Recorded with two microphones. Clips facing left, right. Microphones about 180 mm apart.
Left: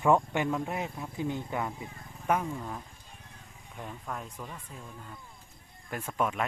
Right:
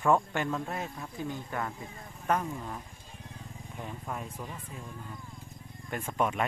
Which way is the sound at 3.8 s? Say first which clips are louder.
Right 1 dB; 5° right (ahead or behind).